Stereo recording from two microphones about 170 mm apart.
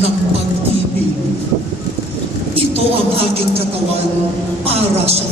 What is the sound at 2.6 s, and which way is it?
Speech, 35° right (ahead or behind).